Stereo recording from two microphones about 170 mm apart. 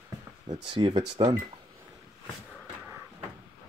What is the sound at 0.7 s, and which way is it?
Speech, 25° right (ahead or behind).